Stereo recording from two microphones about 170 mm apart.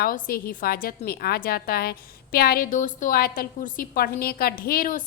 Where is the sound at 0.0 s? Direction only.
60° left (ahead or behind).